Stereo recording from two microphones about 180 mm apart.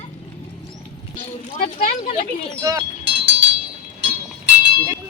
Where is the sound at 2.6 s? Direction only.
20° right (ahead or behind).